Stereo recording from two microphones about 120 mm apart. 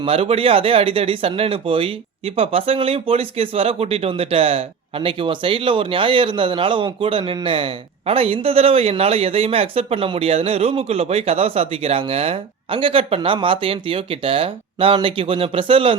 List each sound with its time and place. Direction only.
0.0 s speech: 55° right (ahead or behind)